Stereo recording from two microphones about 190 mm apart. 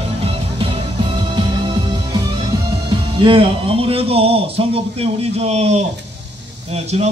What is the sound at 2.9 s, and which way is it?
A man's voice, 25° right (ahead or behind).